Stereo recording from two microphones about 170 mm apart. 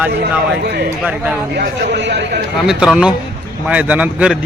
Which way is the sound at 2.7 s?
5° right (ahead or behind).